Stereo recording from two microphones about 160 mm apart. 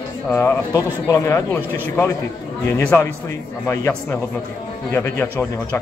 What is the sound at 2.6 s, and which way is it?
Speech, 15° left (ahead or behind).